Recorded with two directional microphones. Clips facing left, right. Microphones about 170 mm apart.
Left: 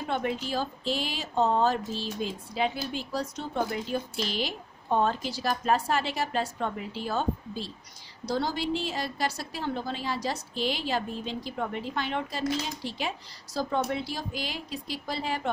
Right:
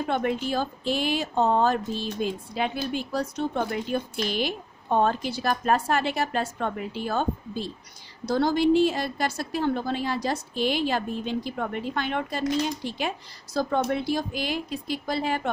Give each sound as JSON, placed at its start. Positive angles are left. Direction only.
{"t": 0.1, "sound": "a woman's voice", "side_deg": -55}